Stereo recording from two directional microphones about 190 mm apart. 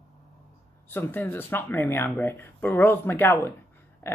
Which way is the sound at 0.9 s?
10° left (ahead or behind).